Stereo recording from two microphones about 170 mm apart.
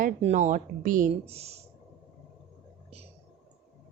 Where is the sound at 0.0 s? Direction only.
45° right (ahead or behind).